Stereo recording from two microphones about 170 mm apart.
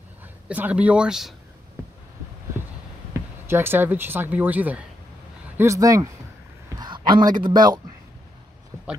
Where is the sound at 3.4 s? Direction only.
15° right (ahead or behind).